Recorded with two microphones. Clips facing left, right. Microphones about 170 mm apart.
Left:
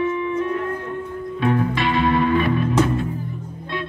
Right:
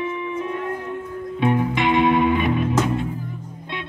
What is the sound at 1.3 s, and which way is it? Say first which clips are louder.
Music: even; 20° right (ahead or behind).